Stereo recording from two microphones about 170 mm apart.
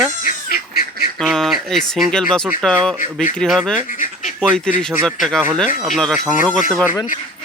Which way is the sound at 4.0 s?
50° left (ahead or behind).